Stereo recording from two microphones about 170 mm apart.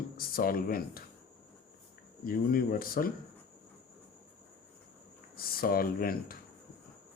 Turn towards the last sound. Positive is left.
turn(degrees=60)  # may be behind; listen again after turning